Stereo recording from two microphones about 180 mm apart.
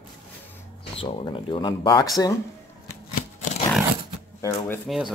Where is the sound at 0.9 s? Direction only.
30° left (ahead or behind).